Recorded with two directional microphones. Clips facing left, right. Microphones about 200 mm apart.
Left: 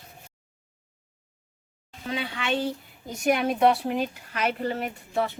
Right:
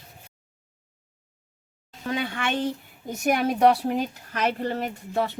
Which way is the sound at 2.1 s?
50° right (ahead or behind).